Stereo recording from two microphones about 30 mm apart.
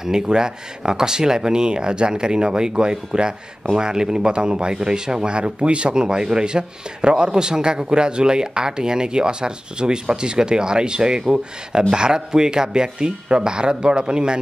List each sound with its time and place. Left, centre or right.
0.0 s a man's voice: right
5.9 s a man's voice: right